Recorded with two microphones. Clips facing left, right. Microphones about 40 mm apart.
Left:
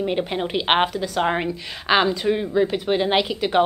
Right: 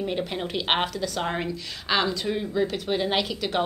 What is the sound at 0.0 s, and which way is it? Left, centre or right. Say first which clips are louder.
A woman's voice: left 5 dB; left.